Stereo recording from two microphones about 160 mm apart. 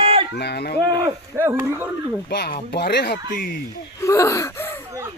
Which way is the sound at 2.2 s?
90° left.